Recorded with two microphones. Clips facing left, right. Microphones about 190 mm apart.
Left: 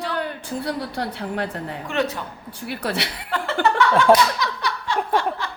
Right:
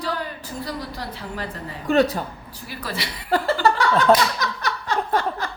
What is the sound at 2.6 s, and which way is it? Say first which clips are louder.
Speech: left 5 dB; 70° left (ahead or behind).